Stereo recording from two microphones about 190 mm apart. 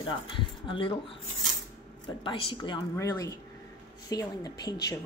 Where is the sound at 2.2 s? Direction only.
25° left (ahead or behind).